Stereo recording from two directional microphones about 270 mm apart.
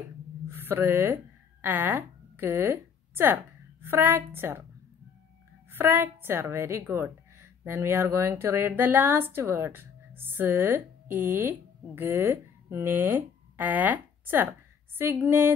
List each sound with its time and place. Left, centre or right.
0.5 s a sound: centre
3.8 s a woman's voice: centre
5.7 s a woman's voice: centre